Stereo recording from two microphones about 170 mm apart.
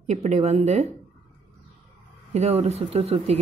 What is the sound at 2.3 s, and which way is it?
Speech, 40° right (ahead or behind).